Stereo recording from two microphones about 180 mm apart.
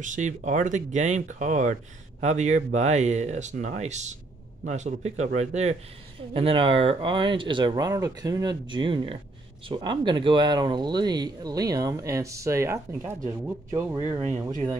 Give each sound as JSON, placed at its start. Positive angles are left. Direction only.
{"t": 0.0, "sound": "speech", "side_deg": -45}